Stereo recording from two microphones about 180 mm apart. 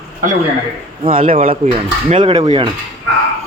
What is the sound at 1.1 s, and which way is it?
Speech, 50° right (ahead or behind).